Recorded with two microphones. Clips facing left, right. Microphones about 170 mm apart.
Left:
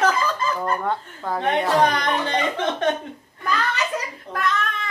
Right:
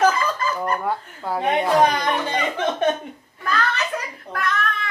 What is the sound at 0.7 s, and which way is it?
Speech, 10° right (ahead or behind).